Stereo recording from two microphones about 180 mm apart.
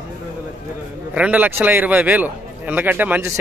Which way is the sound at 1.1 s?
5° right (ahead or behind).